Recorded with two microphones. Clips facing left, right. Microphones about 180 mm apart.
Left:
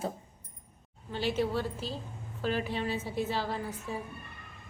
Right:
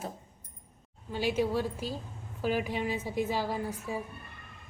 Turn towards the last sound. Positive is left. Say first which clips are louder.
# right 2 dB
turn(degrees=-10)  # may be behind; listen again after turning